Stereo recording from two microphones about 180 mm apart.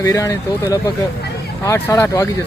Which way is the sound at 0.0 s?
20° left (ahead or behind).